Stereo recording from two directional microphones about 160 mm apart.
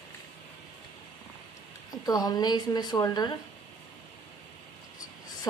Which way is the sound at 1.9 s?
25° left (ahead or behind).